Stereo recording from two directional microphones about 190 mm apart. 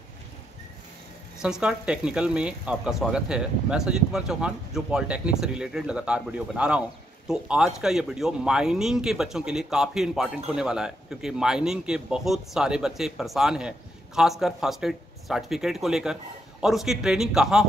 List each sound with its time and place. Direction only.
1.4 s speech: 5° right (ahead or behind)